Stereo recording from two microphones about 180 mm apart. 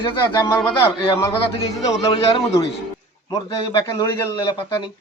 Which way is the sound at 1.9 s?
30° left (ahead or behind).